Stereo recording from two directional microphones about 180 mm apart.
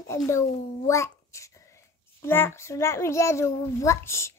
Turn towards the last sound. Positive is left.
turn(degrees=15)  # may be behind; listen again after turning